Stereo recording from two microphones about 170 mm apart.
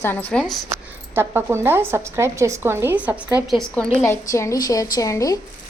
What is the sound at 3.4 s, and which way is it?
Speech, centre (ahead or behind).